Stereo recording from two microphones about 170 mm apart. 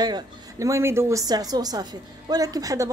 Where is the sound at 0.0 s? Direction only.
20° right (ahead or behind).